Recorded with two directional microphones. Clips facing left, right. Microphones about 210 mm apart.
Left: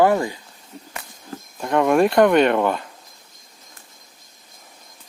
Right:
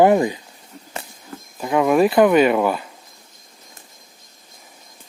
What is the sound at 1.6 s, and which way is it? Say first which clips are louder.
Speech: right 1 dB; 5° right (ahead or behind).